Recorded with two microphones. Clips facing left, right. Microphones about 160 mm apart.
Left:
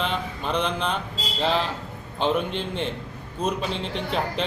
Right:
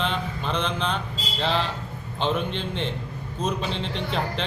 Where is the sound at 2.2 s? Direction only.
5° left (ahead or behind).